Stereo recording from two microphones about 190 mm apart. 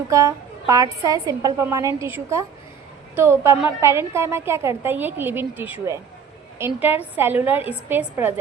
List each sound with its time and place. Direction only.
0.1 s a woman's voice: 15° right (ahead or behind)